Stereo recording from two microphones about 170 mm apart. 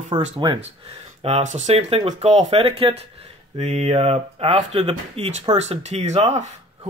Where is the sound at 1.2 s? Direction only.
40° right (ahead or behind).